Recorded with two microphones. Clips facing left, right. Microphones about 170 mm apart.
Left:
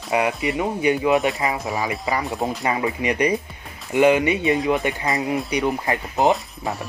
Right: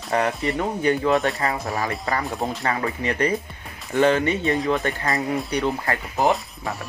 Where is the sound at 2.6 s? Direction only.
15° left (ahead or behind).